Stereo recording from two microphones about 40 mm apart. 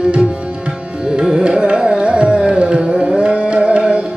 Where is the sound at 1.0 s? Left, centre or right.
Right.